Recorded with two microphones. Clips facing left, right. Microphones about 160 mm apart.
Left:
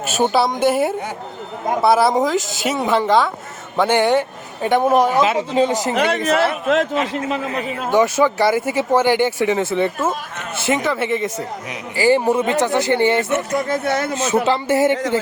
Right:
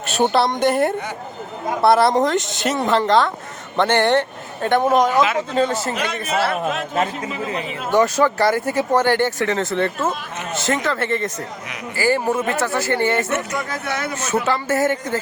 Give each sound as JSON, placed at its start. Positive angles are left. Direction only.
{"t": 0.0, "sound": "a man's voice", "side_deg": 0}
{"t": 5.9, "sound": "speech", "side_deg": 65}
{"t": 7.9, "sound": "a man's voice", "side_deg": 5}
{"t": 13.5, "sound": "speech", "side_deg": 30}
{"t": 14.4, "sound": "a man's voice", "side_deg": 15}